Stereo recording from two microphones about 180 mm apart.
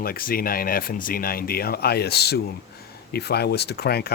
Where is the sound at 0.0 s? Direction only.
55° left (ahead or behind).